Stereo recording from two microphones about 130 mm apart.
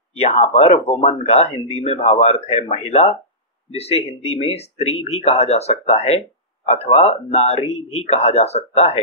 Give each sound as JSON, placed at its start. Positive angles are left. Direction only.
{"t": 0.2, "sound": "speech", "side_deg": 55}